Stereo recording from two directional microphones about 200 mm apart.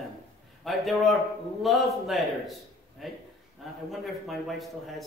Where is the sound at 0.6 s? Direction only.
Centre (ahead or behind).